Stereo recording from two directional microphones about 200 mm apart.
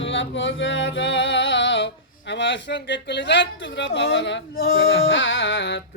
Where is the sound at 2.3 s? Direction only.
60° left (ahead or behind).